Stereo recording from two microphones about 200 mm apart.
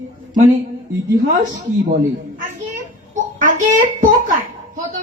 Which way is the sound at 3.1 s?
40° right (ahead or behind).